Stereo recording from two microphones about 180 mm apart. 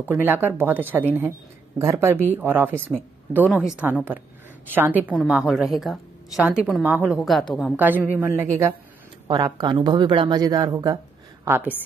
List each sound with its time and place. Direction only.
0.0 s a woman's voice: 10° right (ahead or behind)
7.2 s a woman's voice: centre (ahead or behind)
9.3 s speech: 25° right (ahead or behind)